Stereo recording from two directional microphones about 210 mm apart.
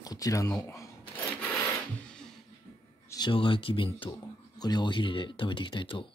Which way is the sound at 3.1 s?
20° left (ahead or behind).